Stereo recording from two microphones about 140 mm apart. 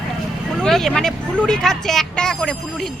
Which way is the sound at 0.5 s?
5° left (ahead or behind).